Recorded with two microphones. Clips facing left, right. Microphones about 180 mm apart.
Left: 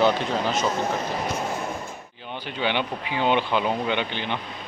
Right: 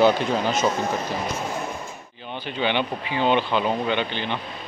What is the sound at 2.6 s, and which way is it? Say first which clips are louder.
Speech: right 2 dB; 10° left (ahead or behind).